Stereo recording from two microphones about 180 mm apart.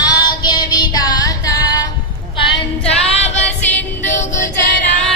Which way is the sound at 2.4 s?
35° left (ahead or behind).